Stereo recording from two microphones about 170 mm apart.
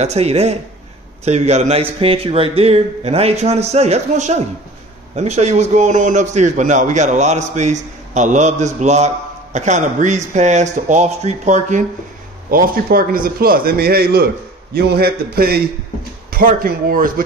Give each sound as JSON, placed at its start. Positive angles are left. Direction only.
{"t": 0.0, "sound": "a man's voice", "side_deg": -40}
{"t": 12.4, "sound": "a man's voice", "side_deg": -55}